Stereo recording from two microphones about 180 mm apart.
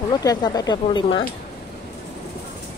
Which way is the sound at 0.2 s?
20° left (ahead or behind).